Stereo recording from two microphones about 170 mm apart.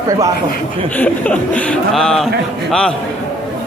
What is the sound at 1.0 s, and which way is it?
Speech, 10° left (ahead or behind).